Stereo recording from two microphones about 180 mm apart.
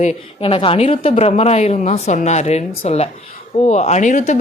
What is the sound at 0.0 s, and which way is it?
Speech, 35° left (ahead or behind).